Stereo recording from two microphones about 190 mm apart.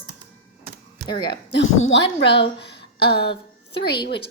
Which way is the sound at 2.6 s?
60° left (ahead or behind).